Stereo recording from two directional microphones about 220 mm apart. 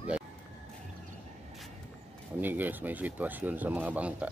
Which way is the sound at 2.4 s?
10° right (ahead or behind).